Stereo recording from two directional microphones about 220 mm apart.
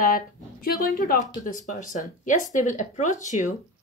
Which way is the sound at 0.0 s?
40° left (ahead or behind).